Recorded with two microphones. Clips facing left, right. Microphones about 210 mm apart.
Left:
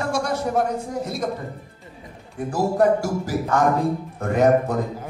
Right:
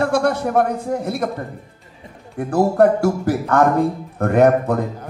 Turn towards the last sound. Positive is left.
turn(degrees=-60)  # may be behind; listen again after turning